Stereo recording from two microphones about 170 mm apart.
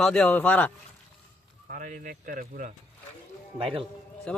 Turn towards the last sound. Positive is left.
turn(degrees=5)  # may be behind; listen again after turning